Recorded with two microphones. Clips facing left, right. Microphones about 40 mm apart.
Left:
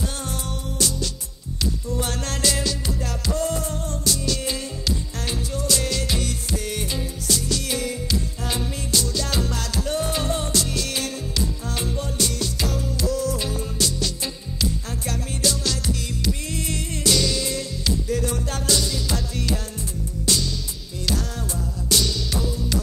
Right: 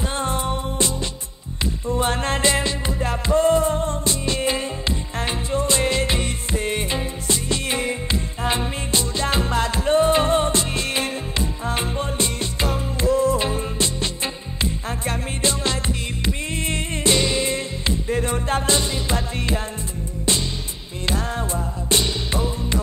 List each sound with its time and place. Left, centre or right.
0.1 s music: right